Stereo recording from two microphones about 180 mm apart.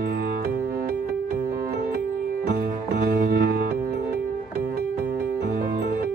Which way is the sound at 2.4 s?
65° right (ahead or behind).